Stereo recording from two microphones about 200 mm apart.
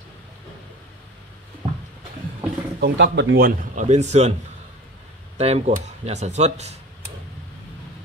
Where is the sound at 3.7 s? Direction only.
35° right (ahead or behind).